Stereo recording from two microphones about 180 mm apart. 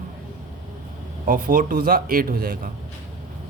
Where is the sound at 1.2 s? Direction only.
45° right (ahead or behind).